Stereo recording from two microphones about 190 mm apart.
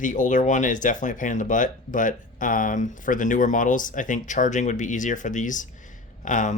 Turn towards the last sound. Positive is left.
turn(degrees=40)  # may be behind; listen again after turning